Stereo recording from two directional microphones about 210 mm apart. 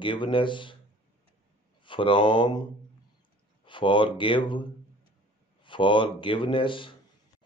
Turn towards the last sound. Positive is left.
turn(degrees=25)  # may be behind; listen again after turning